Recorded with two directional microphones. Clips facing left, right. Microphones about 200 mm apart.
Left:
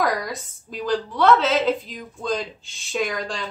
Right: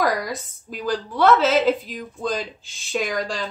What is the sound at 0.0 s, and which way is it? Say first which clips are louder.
Speech: right 1 dB; centre (ahead or behind).